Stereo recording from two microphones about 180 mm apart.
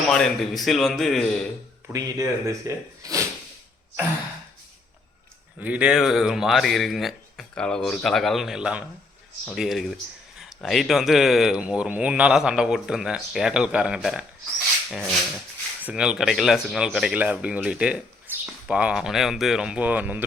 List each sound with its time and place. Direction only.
0.1 s speech: centre (ahead or behind)
1.9 s speech: 20° right (ahead or behind)
5.5 s speech: 10° right (ahead or behind)
18.3 s a sound: 10° right (ahead or behind)
18.7 s speech: 5° right (ahead or behind)